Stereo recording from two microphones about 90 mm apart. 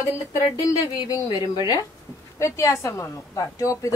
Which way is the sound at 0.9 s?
45° left (ahead or behind).